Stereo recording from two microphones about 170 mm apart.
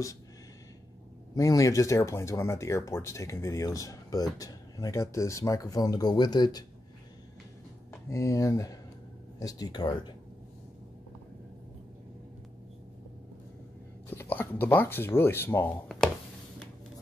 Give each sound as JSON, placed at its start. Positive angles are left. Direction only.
{"t": 1.3, "sound": "speech", "side_deg": 20}
{"t": 8.1, "sound": "speech", "side_deg": 20}
{"t": 14.1, "sound": "speech", "side_deg": 10}